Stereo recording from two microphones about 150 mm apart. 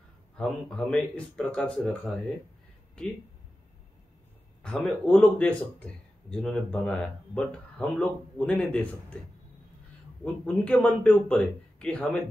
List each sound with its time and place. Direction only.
0.4 s speech: 5° left (ahead or behind)
4.6 s speech: 10° left (ahead or behind)